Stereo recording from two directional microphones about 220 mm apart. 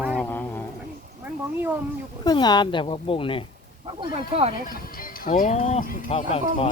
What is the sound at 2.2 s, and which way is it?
Speech, 20° left (ahead or behind).